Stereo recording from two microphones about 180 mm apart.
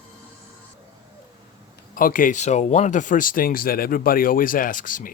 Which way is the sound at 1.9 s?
50° left (ahead or behind).